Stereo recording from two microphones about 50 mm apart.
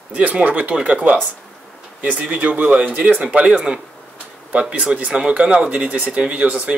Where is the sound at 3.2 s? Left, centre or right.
Right.